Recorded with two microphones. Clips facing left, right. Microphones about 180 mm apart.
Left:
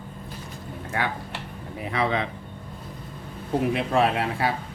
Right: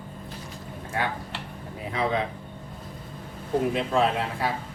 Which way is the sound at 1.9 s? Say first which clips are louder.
Left 2 dB; 75° left (ahead or behind).